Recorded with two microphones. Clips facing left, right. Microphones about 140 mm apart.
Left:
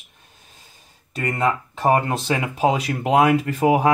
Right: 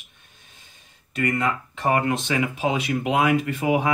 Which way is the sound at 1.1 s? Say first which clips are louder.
Left 2 dB; 35° left (ahead or behind).